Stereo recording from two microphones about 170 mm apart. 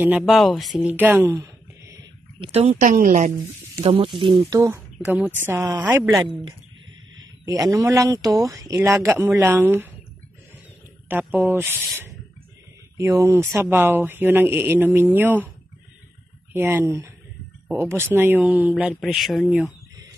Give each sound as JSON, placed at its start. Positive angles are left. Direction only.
{"t": 0.3, "sound": "speech", "side_deg": 0}
{"t": 0.9, "sound": "speech", "side_deg": -10}
{"t": 1.3, "sound": "a sound", "side_deg": -20}
{"t": 2.4, "sound": "speech", "side_deg": -35}
{"t": 3.8, "sound": "speech", "side_deg": -35}
{"t": 4.6, "sound": "speech", "side_deg": -15}
{"t": 7.4, "sound": "speech", "side_deg": -20}
{"t": 11.1, "sound": "speech", "side_deg": -10}
{"t": 12.9, "sound": "speech", "side_deg": -15}
{"t": 16.5, "sound": "speech", "side_deg": -10}